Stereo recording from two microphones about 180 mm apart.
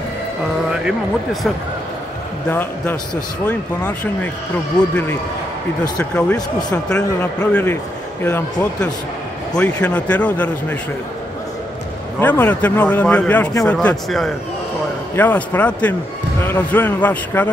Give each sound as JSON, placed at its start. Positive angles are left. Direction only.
{"t": 0.8, "sound": "speech", "side_deg": 0}
{"t": 3.4, "sound": "speech", "side_deg": 10}
{"t": 12.2, "sound": "speech", "side_deg": 10}